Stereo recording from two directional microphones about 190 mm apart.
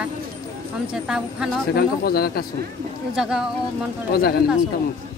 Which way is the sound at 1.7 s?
55° left (ahead or behind).